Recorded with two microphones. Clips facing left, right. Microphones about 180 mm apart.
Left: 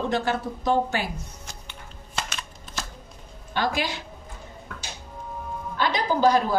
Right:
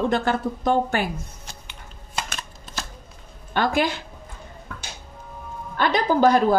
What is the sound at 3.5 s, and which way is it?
Speech, 55° right (ahead or behind).